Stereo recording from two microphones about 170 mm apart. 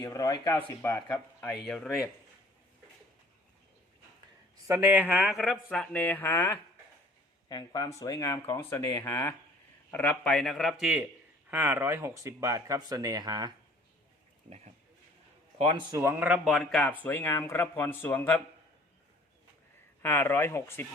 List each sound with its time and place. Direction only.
0.0 s a man's voice: 20° left (ahead or behind); by 2.0 s centre (ahead or behind)
4.6 s a man's voice: 15° right (ahead or behind)
15.5 s a man's voice: 25° right (ahead or behind)
16.0 s a man's voice: 15° right (ahead or behind); by 18.4 s 15° left (ahead or behind)
20.0 s a man's voice: 15° left (ahead or behind)